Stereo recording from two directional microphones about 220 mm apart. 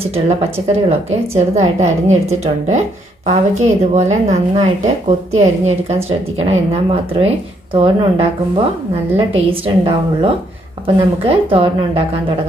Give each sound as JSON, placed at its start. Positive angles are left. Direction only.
{"t": 0.1, "sound": "a woman's voice", "side_deg": -30}